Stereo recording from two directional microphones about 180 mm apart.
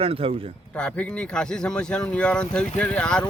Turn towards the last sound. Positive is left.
turn(degrees=5)  # may be behind; listen again after turning